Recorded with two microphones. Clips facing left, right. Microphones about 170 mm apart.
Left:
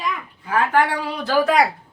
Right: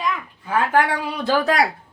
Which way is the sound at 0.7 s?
15° right (ahead or behind).